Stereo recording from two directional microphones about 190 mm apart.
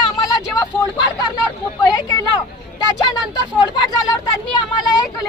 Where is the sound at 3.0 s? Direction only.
20° left (ahead or behind).